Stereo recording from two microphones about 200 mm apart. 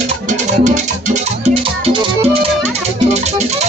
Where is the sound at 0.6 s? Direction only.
40° right (ahead or behind).